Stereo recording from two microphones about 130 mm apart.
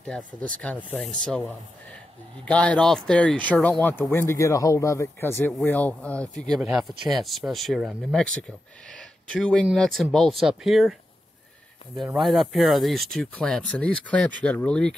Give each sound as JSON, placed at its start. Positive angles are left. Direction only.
{"t": 0.0, "sound": "speech", "side_deg": 10}
{"t": 4.1, "sound": "a man's voice", "side_deg": 20}
{"t": 6.6, "sound": "speech", "side_deg": -5}
{"t": 9.3, "sound": "speech", "side_deg": 5}
{"t": 12.2, "sound": "speech", "side_deg": 0}